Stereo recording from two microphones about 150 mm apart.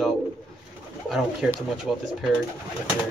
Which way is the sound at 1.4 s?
5° right (ahead or behind).